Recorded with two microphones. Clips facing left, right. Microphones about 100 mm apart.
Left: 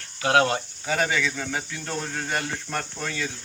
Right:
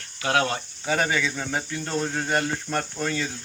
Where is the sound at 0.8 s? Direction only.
15° right (ahead or behind).